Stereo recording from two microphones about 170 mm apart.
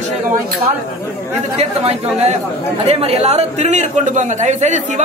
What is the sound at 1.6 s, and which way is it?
A man's voice, 40° right (ahead or behind).